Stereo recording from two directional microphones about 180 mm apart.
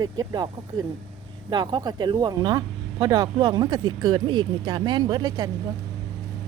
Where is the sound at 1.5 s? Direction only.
25° right (ahead or behind).